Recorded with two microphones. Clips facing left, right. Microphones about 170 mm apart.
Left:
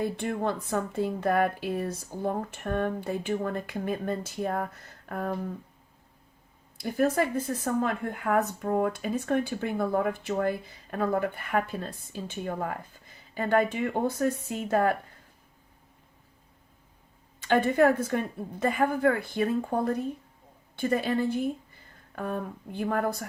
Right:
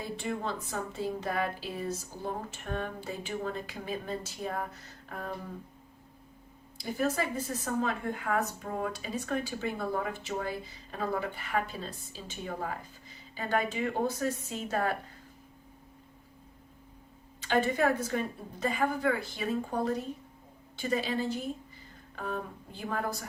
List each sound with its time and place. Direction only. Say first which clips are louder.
0.0 s speech: left 6 dB; 55° left (ahead or behind)
5.0 s a sound: left 7 dB; 55° left (ahead or behind)
6.7 s speech: left 5 dB; 55° left (ahead or behind)
17.5 s speech: left 5 dB; 55° left (ahead or behind)